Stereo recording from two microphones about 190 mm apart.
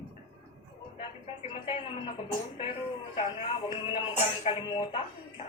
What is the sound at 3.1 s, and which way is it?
A man's voice, 30° left (ahead or behind).